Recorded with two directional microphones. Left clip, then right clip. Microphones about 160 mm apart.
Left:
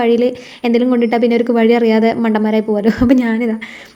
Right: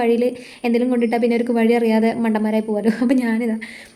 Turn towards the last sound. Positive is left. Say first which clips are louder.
# left 5 dB
turn(degrees=25)  # may be behind; listen again after turning